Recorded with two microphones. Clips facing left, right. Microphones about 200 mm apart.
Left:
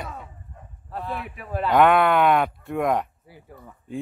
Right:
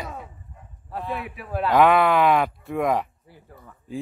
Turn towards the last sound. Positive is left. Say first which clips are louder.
# even
turn(degrees=0)  # may be behind; listen again after turning